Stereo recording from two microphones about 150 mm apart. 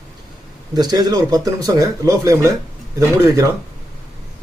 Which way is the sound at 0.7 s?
25° right (ahead or behind).